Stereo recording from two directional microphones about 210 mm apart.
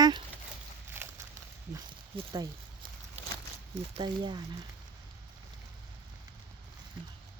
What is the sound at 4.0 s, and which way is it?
Speech, 20° right (ahead or behind).